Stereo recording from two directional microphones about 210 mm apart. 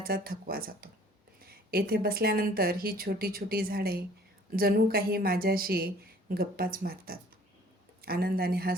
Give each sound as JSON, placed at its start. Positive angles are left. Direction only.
{"t": 0.0, "sound": "speech", "side_deg": -45}